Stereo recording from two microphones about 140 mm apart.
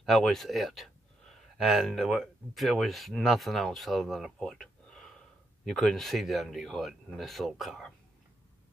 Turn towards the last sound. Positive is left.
turn(degrees=0)  # may be behind; listen again after turning